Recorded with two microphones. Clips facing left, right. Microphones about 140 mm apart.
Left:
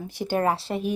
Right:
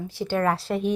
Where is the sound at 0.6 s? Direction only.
Centre (ahead or behind).